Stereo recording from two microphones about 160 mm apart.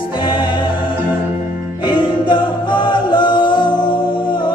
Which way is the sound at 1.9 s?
30° left (ahead or behind).